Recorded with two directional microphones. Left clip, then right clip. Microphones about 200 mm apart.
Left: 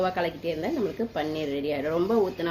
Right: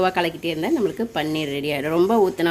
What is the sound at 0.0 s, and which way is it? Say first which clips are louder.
Speech: right 6 dB; 50° right (ahead or behind).